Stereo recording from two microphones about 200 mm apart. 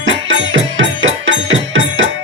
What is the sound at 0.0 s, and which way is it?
Music, 75° right (ahead or behind).